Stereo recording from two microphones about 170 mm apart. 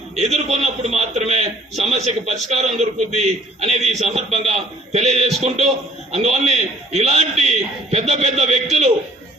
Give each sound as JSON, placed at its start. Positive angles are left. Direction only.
{"t": 0.3, "sound": "a man's voice", "side_deg": -40}